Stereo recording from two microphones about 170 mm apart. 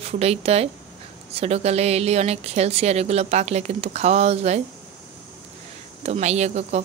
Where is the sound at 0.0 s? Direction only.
40° right (ahead or behind).